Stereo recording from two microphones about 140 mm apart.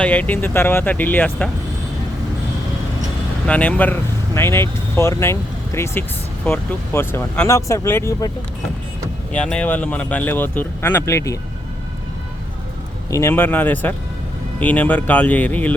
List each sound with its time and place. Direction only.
0.0 s speech: 10° left (ahead or behind)
3.4 s speech: 10° left (ahead or behind)
9.3 s speech: 5° left (ahead or behind)
13.1 s speech: 20° left (ahead or behind)